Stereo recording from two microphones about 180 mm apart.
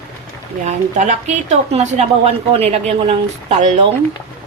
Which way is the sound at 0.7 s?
40° right (ahead or behind).